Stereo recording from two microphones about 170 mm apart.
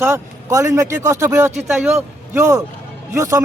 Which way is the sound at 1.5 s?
40° right (ahead or behind).